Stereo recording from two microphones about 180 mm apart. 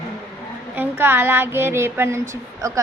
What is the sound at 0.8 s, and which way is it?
Speech, 10° right (ahead or behind).